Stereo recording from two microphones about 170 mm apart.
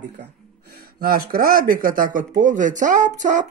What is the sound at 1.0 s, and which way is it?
Speech, 60° right (ahead or behind).